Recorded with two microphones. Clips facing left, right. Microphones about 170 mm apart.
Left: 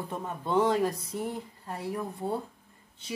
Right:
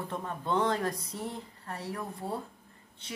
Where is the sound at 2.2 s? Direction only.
20° left (ahead or behind).